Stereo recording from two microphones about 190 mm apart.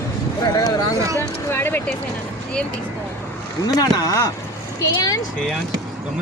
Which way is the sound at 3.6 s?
20° left (ahead or behind).